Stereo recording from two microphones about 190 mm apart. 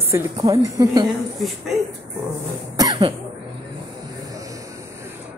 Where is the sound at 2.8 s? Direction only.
25° right (ahead or behind).